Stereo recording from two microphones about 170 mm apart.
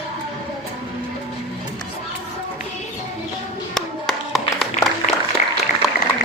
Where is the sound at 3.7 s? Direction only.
Centre (ahead or behind).